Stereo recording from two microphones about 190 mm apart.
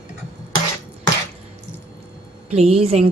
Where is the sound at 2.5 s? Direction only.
30° right (ahead or behind).